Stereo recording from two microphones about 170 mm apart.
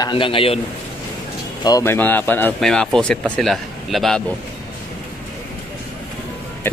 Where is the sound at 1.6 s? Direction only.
15° left (ahead or behind); by 4.2 s centre (ahead or behind).